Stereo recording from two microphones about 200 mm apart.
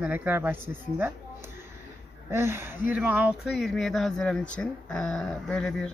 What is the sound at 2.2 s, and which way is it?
Speech, 10° right (ahead or behind).